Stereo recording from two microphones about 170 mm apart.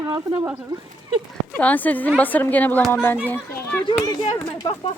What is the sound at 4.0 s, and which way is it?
Speech, 25° left (ahead or behind).